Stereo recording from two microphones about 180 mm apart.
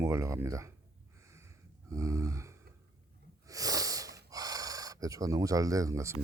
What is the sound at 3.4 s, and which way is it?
Sniff, 20° right (ahead or behind).